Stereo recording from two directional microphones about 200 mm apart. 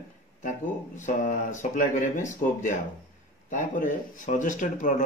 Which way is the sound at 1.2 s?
40° left (ahead or behind).